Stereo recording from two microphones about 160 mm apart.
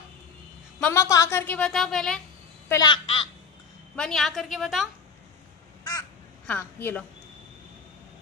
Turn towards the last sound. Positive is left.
turn(degrees=10)  # may be behind; listen again after turning